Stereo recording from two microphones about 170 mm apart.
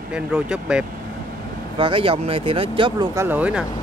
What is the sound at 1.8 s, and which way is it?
Speech, 30° right (ahead or behind).